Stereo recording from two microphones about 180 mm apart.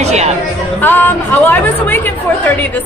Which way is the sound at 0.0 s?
35° right (ahead or behind).